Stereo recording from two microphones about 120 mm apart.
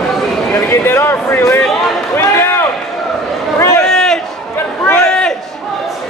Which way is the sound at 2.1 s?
20° left (ahead or behind).